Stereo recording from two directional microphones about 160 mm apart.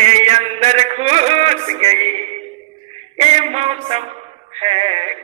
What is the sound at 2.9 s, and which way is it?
Music, 45° right (ahead or behind).